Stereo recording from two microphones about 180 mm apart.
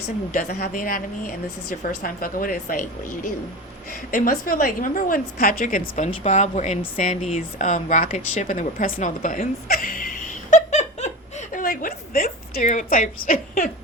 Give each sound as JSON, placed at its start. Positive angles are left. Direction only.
{"t": 0.3, "sound": "a woman's voice", "side_deg": 50}
{"t": 4.1, "sound": "a woman's voice", "side_deg": 50}
{"t": 10.5, "sound": "a sound", "side_deg": 40}
{"t": 13.2, "sound": "a woman's voice", "side_deg": 45}